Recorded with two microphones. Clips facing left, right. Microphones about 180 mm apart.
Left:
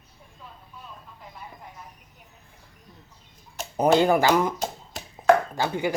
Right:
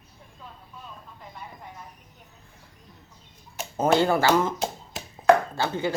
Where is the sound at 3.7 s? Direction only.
15° left (ahead or behind).